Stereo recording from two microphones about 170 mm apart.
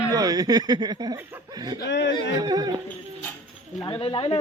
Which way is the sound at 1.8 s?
90° left.